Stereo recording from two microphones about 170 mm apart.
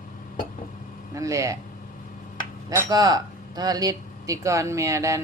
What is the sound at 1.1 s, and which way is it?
Speech, 20° right (ahead or behind).